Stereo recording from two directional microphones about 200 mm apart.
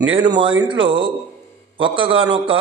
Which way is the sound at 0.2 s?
25° right (ahead or behind).